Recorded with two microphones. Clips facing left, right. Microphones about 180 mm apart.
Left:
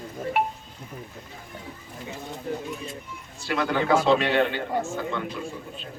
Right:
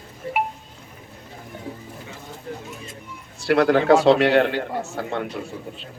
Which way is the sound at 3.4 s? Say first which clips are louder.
Right 8 dB; 70° right (ahead or behind).